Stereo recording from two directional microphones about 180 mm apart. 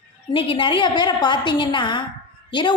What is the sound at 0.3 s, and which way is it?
A woman's voice, 30° left (ahead or behind).